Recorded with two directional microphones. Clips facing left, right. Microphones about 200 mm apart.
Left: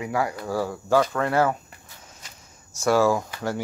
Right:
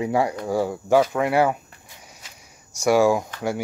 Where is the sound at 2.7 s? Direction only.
15° right (ahead or behind).